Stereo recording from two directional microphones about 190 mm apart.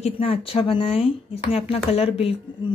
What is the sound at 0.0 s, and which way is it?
Speech, 30° left (ahead or behind).